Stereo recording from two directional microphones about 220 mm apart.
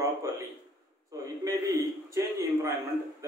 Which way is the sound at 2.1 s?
15° right (ahead or behind).